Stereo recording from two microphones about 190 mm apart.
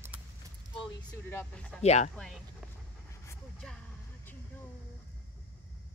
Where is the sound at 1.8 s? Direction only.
35° left (ahead or behind).